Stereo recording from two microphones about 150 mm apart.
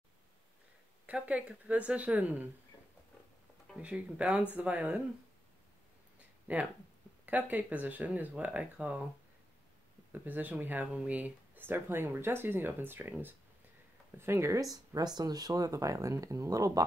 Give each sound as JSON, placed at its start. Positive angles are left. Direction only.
{"t": 1.0, "sound": "speech", "side_deg": -10}
{"t": 3.6, "sound": "speech", "side_deg": -5}
{"t": 6.4, "sound": "speech", "side_deg": -10}
{"t": 10.1, "sound": "speech", "side_deg": -10}